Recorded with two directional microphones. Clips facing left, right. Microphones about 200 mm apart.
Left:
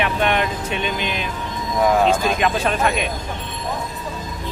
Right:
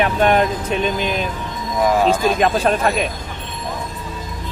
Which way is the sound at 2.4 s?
40° right (ahead or behind).